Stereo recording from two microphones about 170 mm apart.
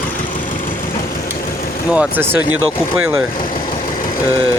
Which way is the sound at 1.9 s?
5° right (ahead or behind).